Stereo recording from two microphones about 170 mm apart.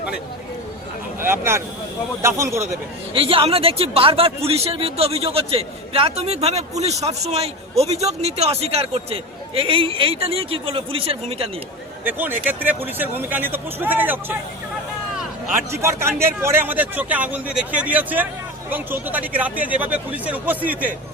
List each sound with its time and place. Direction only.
1.2 s speech: 15° right (ahead or behind)
3.2 s a man's voice: 35° right (ahead or behind)
12.0 s speech: 10° right (ahead or behind)
15.7 s speech: 15° right (ahead or behind)